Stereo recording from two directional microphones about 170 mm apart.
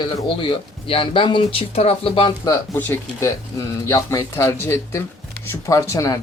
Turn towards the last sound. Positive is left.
turn(degrees=20)  # may be behind; listen again after turning